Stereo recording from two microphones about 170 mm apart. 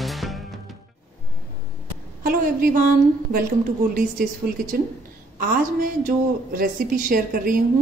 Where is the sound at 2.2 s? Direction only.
55° right (ahead or behind).